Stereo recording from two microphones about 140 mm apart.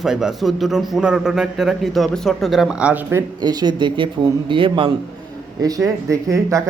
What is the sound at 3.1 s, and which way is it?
Speech, 25° right (ahead or behind).